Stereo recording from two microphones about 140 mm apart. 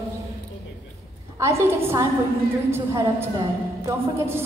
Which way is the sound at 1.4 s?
20° right (ahead or behind).